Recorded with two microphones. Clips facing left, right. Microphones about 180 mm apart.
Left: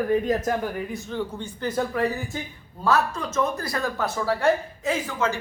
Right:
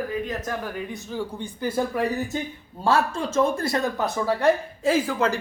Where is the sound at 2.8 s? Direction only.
30° right (ahead or behind).